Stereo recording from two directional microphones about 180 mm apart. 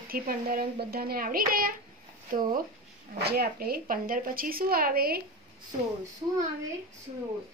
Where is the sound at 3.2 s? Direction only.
60° right (ahead or behind).